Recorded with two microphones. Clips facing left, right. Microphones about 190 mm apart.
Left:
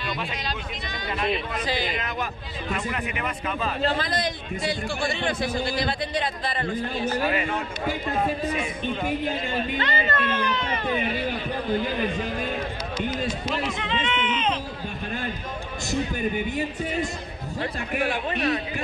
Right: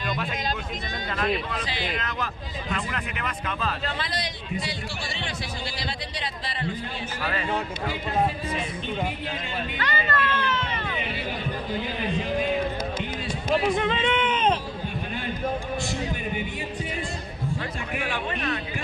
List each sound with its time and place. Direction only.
1.1 s a man's voice: 5° left (ahead or behind)
1.7 s a man's voice: 45° left (ahead or behind)
2.7 s speech: 5° left (ahead or behind)
3.8 s a man's voice: 40° left (ahead or behind)
9.8 s speech: 20° left (ahead or behind)
10.7 s a sound: 45° left (ahead or behind)
13.5 s speech: 50° right (ahead or behind)
17.6 s a man's voice: 40° left (ahead or behind)